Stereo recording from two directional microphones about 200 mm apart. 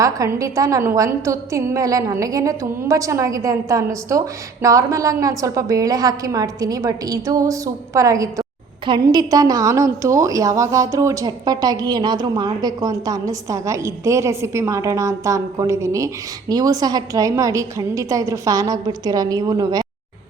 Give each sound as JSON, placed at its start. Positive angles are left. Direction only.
{"t": 0.0, "sound": "a woman's voice", "side_deg": -15}